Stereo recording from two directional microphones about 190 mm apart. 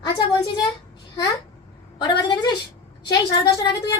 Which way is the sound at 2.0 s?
25° left (ahead or behind).